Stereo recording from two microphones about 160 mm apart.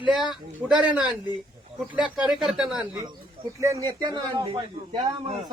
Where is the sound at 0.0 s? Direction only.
Centre (ahead or behind).